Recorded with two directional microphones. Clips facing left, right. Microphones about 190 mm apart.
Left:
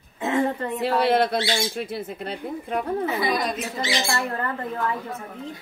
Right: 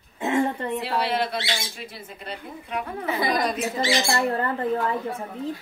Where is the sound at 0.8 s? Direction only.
50° left (ahead or behind).